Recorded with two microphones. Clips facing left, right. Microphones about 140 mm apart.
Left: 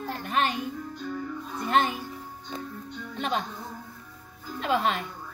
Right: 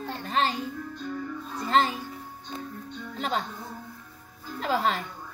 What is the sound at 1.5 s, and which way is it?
Music, 30° right (ahead or behind).